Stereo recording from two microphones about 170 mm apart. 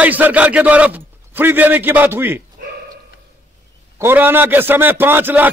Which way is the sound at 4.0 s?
10° right (ahead or behind).